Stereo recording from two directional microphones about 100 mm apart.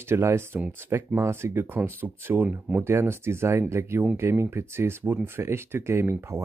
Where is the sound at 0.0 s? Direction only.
25° right (ahead or behind).